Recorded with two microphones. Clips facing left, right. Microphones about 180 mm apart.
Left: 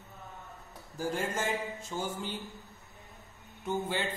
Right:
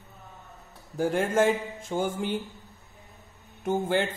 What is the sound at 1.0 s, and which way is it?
A man's voice, 55° right (ahead or behind).